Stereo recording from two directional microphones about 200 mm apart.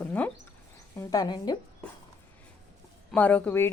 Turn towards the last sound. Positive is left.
turn(degrees=10)  # may be behind; listen again after turning